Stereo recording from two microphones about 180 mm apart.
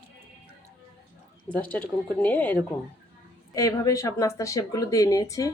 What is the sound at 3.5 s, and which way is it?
Speech, 20° left (ahead or behind).